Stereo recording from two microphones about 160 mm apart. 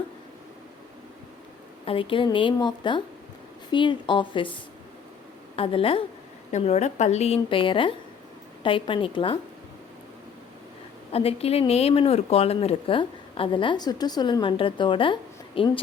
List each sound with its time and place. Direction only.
1.8 s a woman's voice: 35° left (ahead or behind)
5.5 s a woman's voice: 35° left (ahead or behind)
6.5 s a woman's voice: 45° left (ahead or behind)
11.1 s a woman's voice: 40° left (ahead or behind)